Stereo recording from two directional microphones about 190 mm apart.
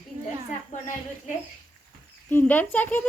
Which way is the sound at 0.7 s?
40° left (ahead or behind).